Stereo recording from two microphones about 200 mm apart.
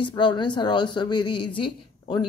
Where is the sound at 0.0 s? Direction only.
25° left (ahead or behind).